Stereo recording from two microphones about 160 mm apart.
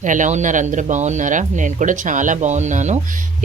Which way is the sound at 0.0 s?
50° right (ahead or behind).